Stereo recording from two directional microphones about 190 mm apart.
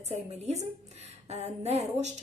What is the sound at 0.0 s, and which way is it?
A woman's voice, 35° right (ahead or behind).